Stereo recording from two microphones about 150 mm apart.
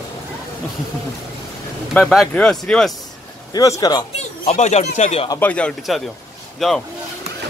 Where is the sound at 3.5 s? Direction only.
20° left (ahead or behind).